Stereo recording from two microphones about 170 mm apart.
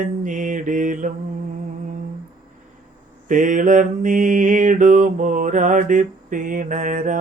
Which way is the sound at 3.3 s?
50° right (ahead or behind).